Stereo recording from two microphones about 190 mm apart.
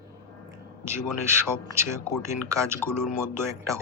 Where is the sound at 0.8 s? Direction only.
15° right (ahead or behind).